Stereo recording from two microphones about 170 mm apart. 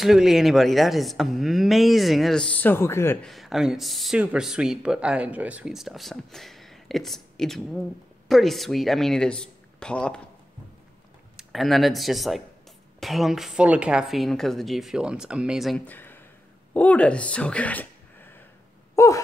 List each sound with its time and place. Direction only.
0.0 s speech: centre (ahead or behind); by 3.3 s 15° left (ahead or behind)
3.3 s speech: centre (ahead or behind)
11.3 s speech: centre (ahead or behind)
18.9 s wail: 20° left (ahead or behind)